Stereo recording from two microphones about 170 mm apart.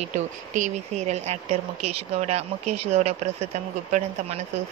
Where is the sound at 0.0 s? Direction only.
45° right (ahead or behind).